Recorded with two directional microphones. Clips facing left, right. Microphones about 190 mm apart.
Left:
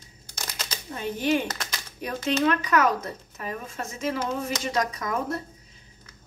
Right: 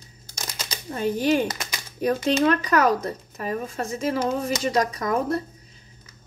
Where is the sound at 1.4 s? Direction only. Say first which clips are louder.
Right 4 dB; 10° right (ahead or behind).